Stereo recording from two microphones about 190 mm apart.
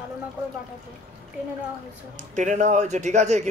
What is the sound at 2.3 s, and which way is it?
A man's voice, 40° right (ahead or behind).